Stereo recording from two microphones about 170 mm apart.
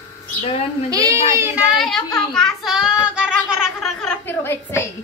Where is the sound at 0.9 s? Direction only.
20° right (ahead or behind).